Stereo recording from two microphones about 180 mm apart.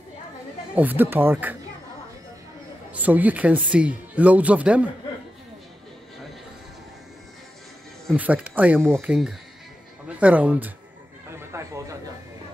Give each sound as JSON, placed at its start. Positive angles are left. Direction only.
{"t": 0.7, "sound": "speech", "side_deg": -10}
{"t": 2.9, "sound": "speech", "side_deg": -10}
{"t": 8.1, "sound": "speech", "side_deg": -5}
{"t": 11.3, "sound": "a sound", "side_deg": -15}